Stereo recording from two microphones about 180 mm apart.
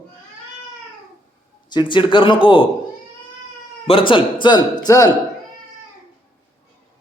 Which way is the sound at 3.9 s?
30° left (ahead or behind).